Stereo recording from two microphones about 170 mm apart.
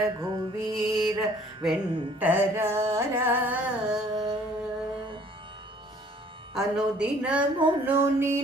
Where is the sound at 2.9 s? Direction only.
15° right (ahead or behind).